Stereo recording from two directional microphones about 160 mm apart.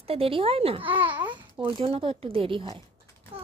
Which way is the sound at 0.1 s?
35° right (ahead or behind).